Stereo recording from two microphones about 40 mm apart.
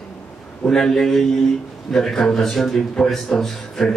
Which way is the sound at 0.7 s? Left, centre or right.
Centre.